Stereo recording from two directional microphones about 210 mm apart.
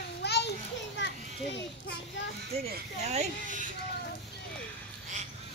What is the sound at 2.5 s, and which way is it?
Speech, 30° right (ahead or behind).